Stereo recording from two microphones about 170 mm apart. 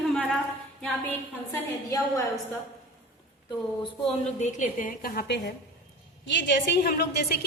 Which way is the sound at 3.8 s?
35° left (ahead or behind).